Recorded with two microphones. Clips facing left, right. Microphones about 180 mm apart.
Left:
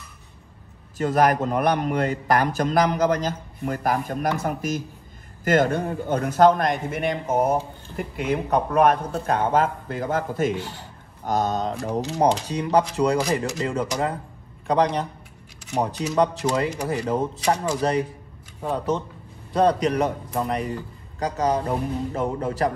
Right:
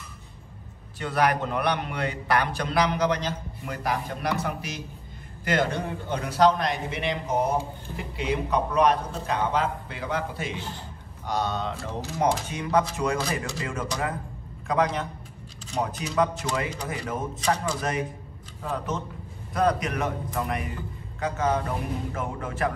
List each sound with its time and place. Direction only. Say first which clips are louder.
0.9 s a man's voice: left 5 dB; 45° left (ahead or behind)